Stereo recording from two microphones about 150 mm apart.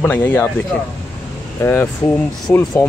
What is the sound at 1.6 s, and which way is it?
Speech, 15° left (ahead or behind).